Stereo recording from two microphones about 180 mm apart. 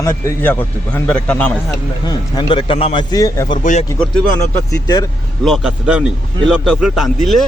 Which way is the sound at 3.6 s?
40° left (ahead or behind).